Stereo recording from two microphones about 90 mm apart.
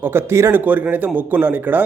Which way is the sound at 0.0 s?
25° right (ahead or behind).